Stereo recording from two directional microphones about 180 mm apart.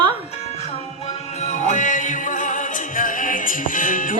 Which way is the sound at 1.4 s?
40° left (ahead or behind).